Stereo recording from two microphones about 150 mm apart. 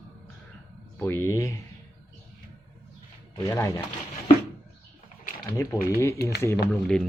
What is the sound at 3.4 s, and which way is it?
Speech, 20° left (ahead or behind).